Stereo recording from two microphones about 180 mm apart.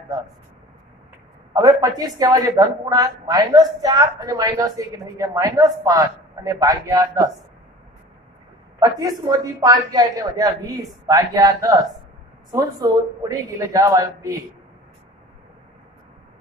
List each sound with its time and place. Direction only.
1.5 s a woman's voice: 20° right (ahead or behind)
8.7 s a man's voice: 20° right (ahead or behind)